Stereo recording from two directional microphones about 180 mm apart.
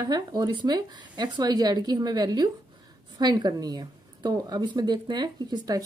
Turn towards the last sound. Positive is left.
turn(degrees=-20)  # may be behind; listen again after turning